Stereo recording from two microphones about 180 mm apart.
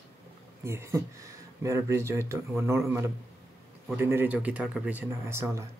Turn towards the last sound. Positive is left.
turn(degrees=-15)  # may be behind; listen again after turning